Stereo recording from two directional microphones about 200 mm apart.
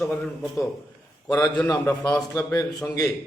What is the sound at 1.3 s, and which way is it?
A man's voice, 15° left (ahead or behind).